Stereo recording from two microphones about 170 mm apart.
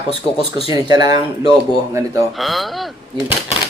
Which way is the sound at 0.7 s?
25° right (ahead or behind).